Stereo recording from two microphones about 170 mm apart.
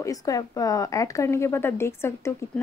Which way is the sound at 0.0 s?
20° left (ahead or behind).